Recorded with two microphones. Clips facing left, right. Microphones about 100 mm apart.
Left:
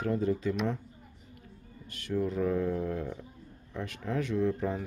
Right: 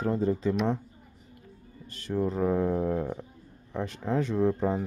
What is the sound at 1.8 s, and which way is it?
Speech, 35° right (ahead or behind).